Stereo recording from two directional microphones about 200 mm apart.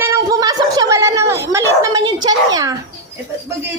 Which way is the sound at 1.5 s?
15° right (ahead or behind).